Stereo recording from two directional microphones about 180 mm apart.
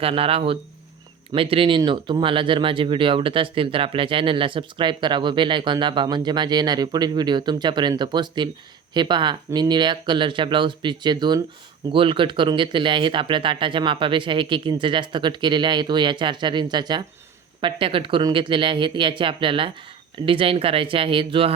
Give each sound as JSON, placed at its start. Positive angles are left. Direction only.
{"t": 0.0, "sound": "speech", "side_deg": -30}